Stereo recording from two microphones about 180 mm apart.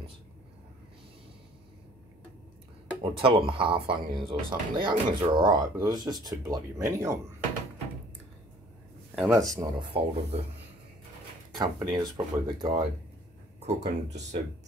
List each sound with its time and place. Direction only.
3.0 s speech: 30° right (ahead or behind)
9.1 s speech: centre (ahead or behind)
9.8 s speech: 35° right (ahead or behind)
11.5 s speech: 25° right (ahead or behind)
13.6 s speech: 35° right (ahead or behind)